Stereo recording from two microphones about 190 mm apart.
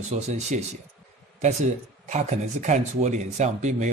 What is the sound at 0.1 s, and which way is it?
Speech, 35° right (ahead or behind).